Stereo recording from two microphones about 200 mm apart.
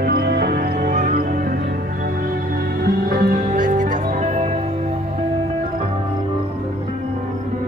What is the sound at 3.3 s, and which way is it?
Music, 35° right (ahead or behind).